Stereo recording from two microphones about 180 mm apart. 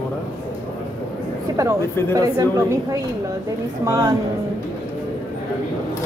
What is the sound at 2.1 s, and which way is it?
A woman's voice, 20° right (ahead or behind).